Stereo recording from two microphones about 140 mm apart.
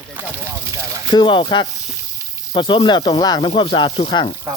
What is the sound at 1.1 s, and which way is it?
Speech, 35° left (ahead or behind).